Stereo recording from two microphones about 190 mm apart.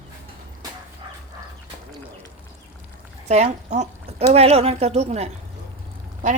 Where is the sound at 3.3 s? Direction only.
35° right (ahead or behind).